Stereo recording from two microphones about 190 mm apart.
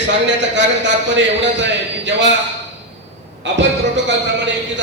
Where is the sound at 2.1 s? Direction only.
70° right (ahead or behind).